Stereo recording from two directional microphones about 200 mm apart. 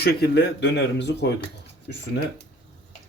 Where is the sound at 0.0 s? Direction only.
50° left (ahead or behind).